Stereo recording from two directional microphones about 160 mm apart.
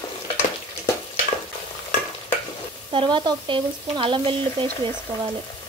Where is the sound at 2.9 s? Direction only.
30° right (ahead or behind).